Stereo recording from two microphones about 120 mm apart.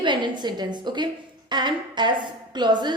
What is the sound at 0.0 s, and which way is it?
A woman's voice, 40° right (ahead or behind).